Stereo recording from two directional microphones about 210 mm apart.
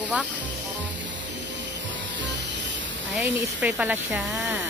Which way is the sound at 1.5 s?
60° right (ahead or behind).